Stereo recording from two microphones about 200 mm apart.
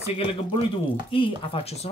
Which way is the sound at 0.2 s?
30° left (ahead or behind).